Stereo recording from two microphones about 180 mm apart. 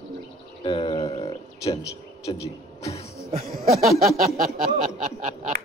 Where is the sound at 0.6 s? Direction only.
30° left (ahead or behind).